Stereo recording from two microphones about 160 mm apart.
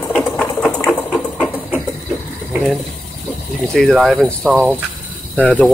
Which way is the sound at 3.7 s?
5° left (ahead or behind).